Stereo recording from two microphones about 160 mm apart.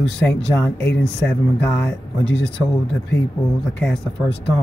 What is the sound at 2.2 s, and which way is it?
Speech, 90° left.